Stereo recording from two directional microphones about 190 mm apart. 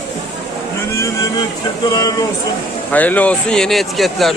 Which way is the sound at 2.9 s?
10° left (ahead or behind).